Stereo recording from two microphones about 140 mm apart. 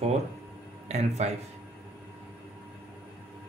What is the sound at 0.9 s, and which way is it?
Speech, 50° right (ahead or behind).